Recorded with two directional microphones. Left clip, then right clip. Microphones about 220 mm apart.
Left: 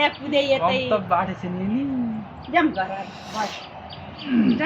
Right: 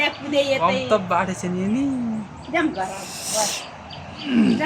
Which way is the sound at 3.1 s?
55° right (ahead or behind).